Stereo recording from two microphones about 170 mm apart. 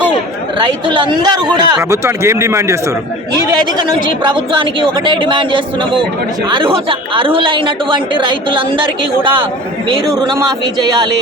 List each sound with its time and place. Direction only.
0.6 s speech: 25° right (ahead or behind)
3.8 s speech: 25° right (ahead or behind)